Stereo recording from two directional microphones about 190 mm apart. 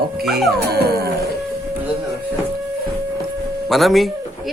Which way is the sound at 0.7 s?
55° right (ahead or behind).